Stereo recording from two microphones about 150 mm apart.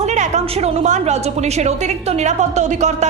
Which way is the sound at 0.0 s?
50° right (ahead or behind).